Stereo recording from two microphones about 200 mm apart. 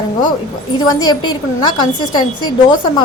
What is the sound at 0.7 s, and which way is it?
A woman's voice, 20° left (ahead or behind).